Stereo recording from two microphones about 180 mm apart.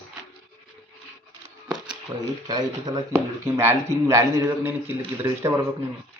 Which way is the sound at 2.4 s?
20° right (ahead or behind).